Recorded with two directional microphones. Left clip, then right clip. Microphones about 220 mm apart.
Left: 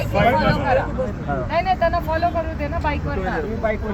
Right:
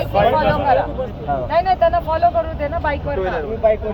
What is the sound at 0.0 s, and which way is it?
Speech, 15° left (ahead or behind).